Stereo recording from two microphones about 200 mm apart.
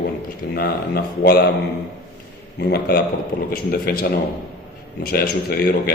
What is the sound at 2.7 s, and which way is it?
A man's voice, 50° left (ahead or behind).